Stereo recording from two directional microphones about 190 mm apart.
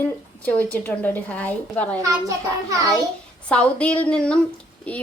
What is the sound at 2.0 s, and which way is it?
Speech, 15° right (ahead or behind).